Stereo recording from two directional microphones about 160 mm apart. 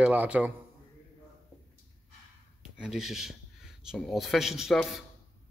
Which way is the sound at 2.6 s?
5° right (ahead or behind).